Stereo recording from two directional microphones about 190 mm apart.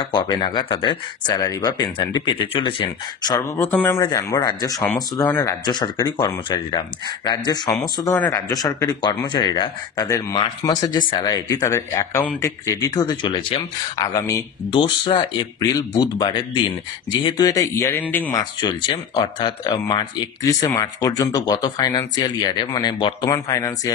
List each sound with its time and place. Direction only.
0.0 s speech: 25° left (ahead or behind); by 18.4 s 10° left (ahead or behind)
18.6 s speech: 20° left (ahead or behind)